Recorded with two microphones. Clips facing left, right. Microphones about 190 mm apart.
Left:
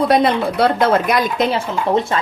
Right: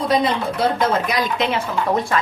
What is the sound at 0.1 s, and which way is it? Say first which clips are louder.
A woman's voice: left 4 dB; 65° left (ahead or behind).